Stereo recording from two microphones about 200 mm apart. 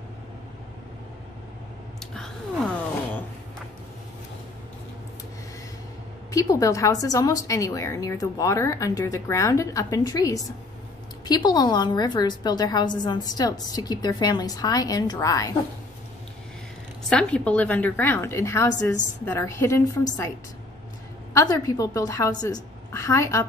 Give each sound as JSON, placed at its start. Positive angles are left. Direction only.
{"t": 2.0, "sound": "a sound", "side_deg": 0}
{"t": 6.3, "sound": "a woman's voice", "side_deg": 15}
{"t": 17.1, "sound": "a woman's voice", "side_deg": 5}
{"t": 21.3, "sound": "a woman's voice", "side_deg": 15}